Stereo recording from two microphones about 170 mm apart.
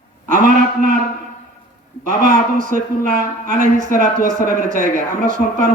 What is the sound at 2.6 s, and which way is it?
A man's voice, 50° right (ahead or behind).